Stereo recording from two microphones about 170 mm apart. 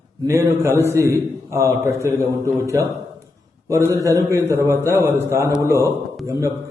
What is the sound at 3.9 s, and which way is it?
A man's voice, 20° right (ahead or behind).